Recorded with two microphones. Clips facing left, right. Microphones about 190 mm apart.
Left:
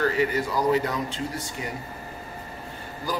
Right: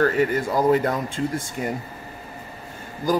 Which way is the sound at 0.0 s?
50° right (ahead or behind).